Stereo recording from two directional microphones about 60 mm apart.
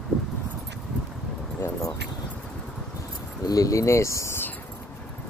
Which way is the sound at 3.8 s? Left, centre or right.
Left.